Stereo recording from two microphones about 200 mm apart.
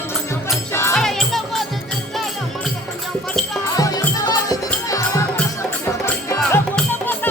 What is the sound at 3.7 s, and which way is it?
Music, 20° left (ahead or behind).